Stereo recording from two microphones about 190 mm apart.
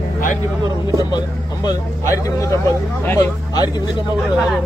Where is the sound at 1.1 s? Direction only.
20° left (ahead or behind).